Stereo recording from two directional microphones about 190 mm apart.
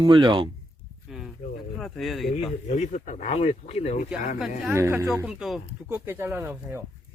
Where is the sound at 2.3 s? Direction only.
35° left (ahead or behind).